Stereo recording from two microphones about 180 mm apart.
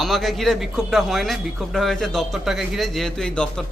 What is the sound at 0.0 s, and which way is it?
A man's voice, centre (ahead or behind).